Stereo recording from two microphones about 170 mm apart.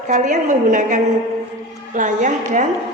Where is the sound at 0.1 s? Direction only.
50° right (ahead or behind).